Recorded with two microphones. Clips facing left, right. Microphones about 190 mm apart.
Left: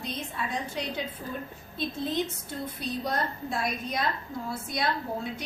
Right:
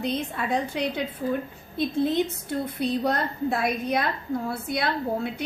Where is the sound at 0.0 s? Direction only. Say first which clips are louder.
Right 7 dB; 60° right (ahead or behind).